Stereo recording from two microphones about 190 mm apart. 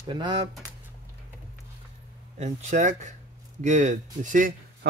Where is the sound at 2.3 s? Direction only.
35° right (ahead or behind).